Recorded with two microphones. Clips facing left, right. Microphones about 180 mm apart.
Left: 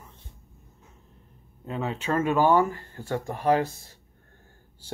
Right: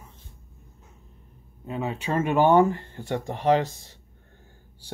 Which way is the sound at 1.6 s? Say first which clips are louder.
Right 1 dB; 10° right (ahead or behind).